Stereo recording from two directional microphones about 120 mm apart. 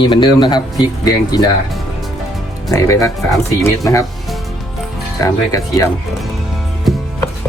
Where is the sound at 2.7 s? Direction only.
25° left (ahead or behind).